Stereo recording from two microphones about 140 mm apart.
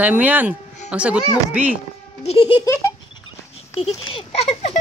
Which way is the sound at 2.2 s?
45° left (ahead or behind).